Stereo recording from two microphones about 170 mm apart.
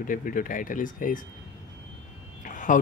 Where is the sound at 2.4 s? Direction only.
50° left (ahead or behind).